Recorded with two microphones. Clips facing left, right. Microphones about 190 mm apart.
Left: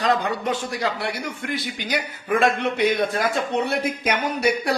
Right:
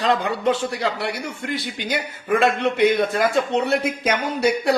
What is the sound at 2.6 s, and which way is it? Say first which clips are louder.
Speech: right 3 dB; 55° right (ahead or behind).